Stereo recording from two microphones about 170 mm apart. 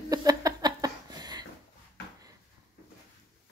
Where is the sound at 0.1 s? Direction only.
20° right (ahead or behind).